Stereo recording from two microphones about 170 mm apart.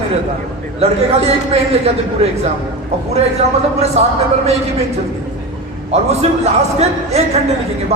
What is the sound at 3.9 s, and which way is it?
Speech, 40° right (ahead or behind).